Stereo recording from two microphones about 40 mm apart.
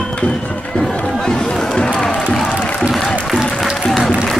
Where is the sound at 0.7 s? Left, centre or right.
Centre.